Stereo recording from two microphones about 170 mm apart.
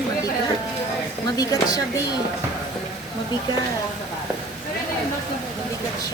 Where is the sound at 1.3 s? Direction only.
20° left (ahead or behind).